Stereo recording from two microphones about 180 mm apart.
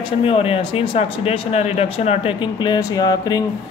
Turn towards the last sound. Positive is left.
turn(degrees=20)  # may be behind; listen again after turning